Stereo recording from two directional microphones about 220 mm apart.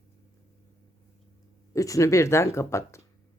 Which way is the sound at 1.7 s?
15° left (ahead or behind).